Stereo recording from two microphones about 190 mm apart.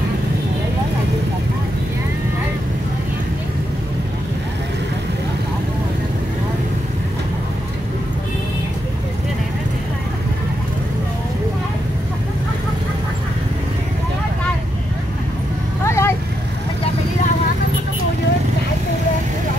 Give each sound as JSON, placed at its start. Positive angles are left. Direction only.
{"t": 15.8, "sound": "vehicle", "side_deg": 15}